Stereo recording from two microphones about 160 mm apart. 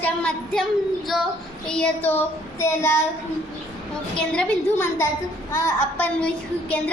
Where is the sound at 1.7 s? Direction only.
10° left (ahead or behind).